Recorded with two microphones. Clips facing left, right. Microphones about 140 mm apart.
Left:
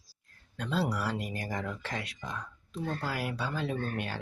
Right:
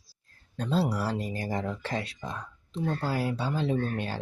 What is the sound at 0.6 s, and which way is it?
Speech, 30° right (ahead or behind).